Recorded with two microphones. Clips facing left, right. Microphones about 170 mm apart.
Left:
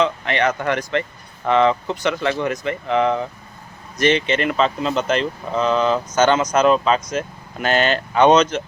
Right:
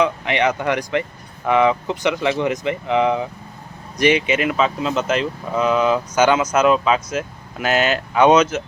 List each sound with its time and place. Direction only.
0.0 s speech: 15° right (ahead or behind)